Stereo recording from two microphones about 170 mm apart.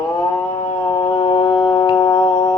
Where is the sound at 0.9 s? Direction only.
25° left (ahead or behind).